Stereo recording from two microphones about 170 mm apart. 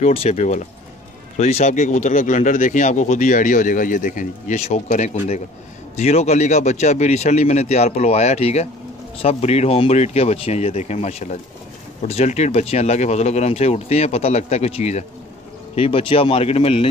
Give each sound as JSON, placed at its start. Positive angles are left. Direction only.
{"t": 0.0, "sound": "speech", "side_deg": 40}